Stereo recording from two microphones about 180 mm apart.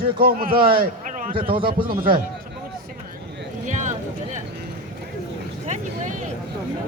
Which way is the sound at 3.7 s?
45° right (ahead or behind).